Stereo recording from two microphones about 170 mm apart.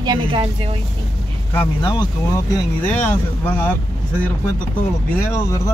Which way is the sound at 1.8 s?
25° left (ahead or behind).